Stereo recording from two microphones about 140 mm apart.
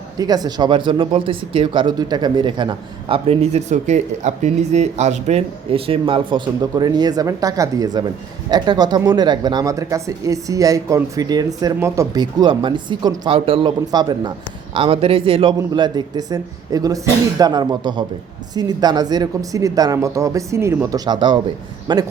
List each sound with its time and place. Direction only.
0.2 s speech: 30° right (ahead or behind)